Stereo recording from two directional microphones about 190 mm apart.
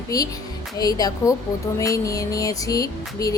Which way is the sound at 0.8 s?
20° left (ahead or behind).